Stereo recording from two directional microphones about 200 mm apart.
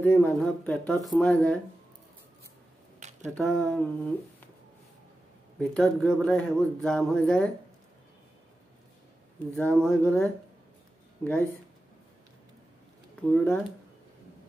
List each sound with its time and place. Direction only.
0.0 s speech: 10° left (ahead or behind)
3.0 s a sound: 35° right (ahead or behind)
3.3 s speech: centre (ahead or behind)
5.6 s speech: 5° left (ahead or behind)
9.6 s speech: 5° left (ahead or behind)
13.3 s speech: 10° left (ahead or behind)